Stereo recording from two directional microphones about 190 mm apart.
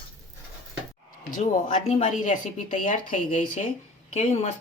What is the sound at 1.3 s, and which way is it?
Speech, 40° left (ahead or behind).